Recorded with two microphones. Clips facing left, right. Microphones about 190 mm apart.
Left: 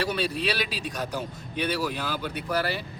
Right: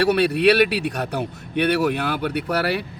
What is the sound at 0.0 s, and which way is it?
Speech, 70° right (ahead or behind).